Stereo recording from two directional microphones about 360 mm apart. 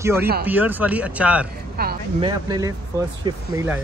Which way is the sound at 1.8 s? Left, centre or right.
Right.